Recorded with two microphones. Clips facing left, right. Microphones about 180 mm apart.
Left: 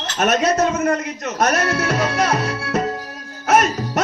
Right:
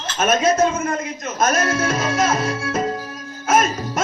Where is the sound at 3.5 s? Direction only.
70° left (ahead or behind).